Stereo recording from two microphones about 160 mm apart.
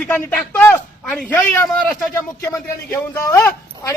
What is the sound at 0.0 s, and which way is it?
A man's voice, 10° left (ahead or behind).